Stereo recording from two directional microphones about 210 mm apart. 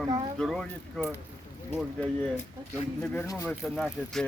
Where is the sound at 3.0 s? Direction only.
10° left (ahead or behind).